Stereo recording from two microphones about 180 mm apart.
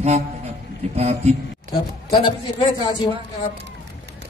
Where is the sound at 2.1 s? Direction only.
25° left (ahead or behind).